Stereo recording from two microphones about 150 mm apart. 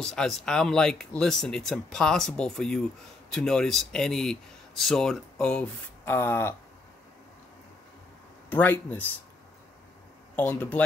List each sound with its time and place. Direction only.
0.0 s speech: 5° left (ahead or behind)
8.5 s speech: 10° left (ahead or behind)
10.3 s speech: 10° left (ahead or behind)